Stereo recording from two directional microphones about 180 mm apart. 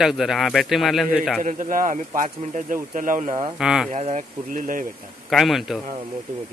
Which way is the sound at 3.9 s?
40° right (ahead or behind).